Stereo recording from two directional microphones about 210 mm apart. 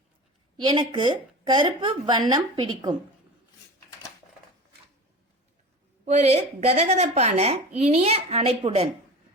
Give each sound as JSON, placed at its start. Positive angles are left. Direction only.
{"t": 0.5, "sound": "a woman's voice", "side_deg": -20}
{"t": 6.1, "sound": "a woman's voice", "side_deg": -35}